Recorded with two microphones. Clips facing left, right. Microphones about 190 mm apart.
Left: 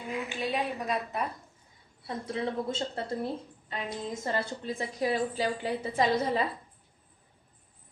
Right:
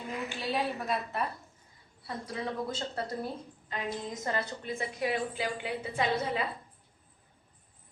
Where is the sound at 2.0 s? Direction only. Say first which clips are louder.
Left 4 dB; 25° left (ahead or behind).